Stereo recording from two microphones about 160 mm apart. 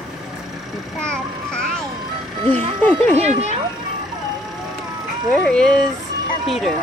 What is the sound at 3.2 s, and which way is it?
Speech, 45° right (ahead or behind).